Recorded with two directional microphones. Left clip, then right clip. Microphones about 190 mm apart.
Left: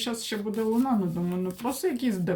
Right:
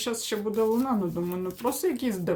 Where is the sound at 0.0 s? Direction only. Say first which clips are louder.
Right 2 dB; 15° right (ahead or behind).